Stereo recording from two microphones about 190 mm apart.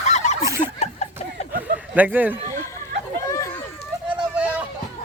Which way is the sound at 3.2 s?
15° left (ahead or behind).